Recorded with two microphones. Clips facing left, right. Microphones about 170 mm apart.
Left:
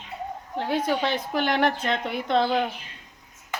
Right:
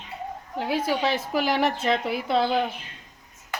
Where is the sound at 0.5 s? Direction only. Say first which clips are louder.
Even; 5° right (ahead or behind).